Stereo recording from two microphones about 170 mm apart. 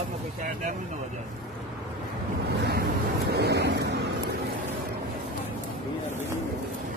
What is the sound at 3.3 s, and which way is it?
Vehicle, 80° right.